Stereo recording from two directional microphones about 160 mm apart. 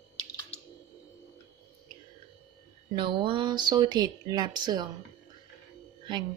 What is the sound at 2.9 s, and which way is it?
Speech, 30° right (ahead or behind).